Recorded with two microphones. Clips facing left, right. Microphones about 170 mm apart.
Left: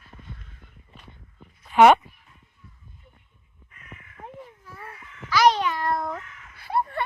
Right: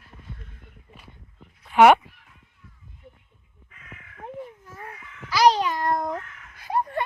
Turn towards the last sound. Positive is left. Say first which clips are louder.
# even
turn(degrees=-15)  # may be behind; listen again after turning